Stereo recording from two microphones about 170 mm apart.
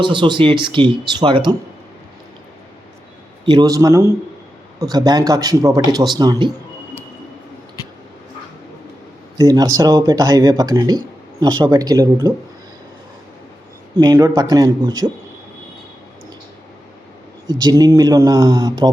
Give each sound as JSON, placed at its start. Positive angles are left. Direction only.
{"t": 0.0, "sound": "speech", "side_deg": -30}
{"t": 3.4, "sound": "speech", "side_deg": -25}
{"t": 9.4, "sound": "speech", "side_deg": -20}
{"t": 14.0, "sound": "speech", "side_deg": -20}
{"t": 17.4, "sound": "speech", "side_deg": -25}